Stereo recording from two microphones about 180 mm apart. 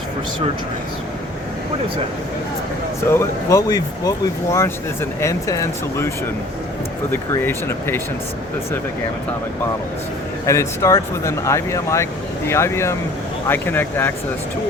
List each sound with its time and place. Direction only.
3.0 s speech: 15° left (ahead or behind)
7.1 s speech: 10° left (ahead or behind)
10.4 s speech: 15° left (ahead or behind)